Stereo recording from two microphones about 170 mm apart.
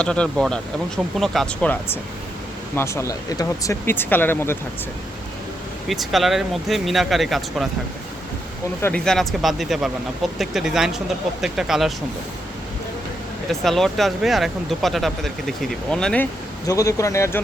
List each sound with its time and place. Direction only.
0.0 s speech: 5° left (ahead or behind)
5.9 s speech: centre (ahead or behind)
8.8 s speech: 5° left (ahead or behind)
13.5 s speech: centre (ahead or behind)
16.6 s speech: 20° left (ahead or behind)